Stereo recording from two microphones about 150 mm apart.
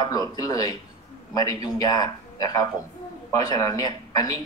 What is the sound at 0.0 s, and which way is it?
A man's voice, 25° left (ahead or behind).